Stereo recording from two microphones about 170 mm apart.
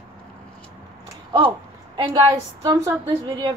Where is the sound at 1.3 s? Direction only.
30° right (ahead or behind).